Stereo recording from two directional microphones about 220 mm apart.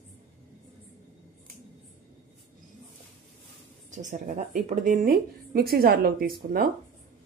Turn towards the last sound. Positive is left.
turn(degrees=-40)  # may be behind; listen again after turning